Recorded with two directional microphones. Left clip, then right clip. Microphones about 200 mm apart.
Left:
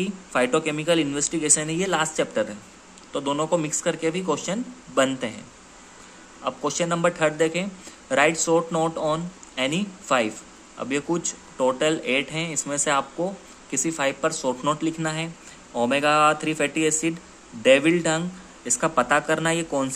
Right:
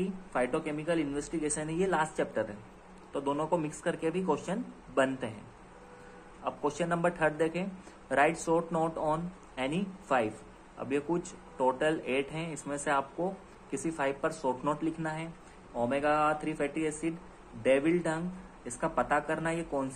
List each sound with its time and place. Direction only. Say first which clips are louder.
0.0 s speech: left 8 dB; 30° left (ahead or behind)
6.4 s speech: left 7 dB; 25° left (ahead or behind)